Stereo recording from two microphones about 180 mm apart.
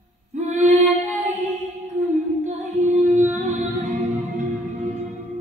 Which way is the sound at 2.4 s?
40° right (ahead or behind).